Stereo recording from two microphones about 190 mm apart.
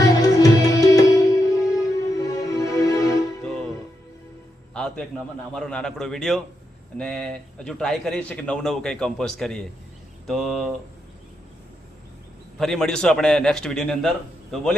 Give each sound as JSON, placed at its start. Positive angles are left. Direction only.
{"t": 0.0, "sound": "music", "side_deg": 20}
{"t": 4.7, "sound": "music", "side_deg": 5}
{"t": 5.5, "sound": "a man's voice", "side_deg": 5}
{"t": 12.5, "sound": "a man's voice", "side_deg": 0}